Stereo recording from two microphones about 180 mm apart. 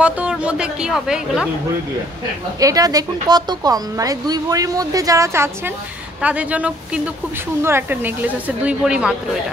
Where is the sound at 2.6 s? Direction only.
20° right (ahead or behind).